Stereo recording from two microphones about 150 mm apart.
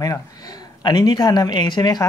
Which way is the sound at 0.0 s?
25° left (ahead or behind).